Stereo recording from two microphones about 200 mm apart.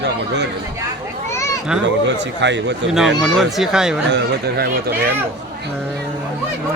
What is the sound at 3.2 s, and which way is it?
Speech, centre (ahead or behind).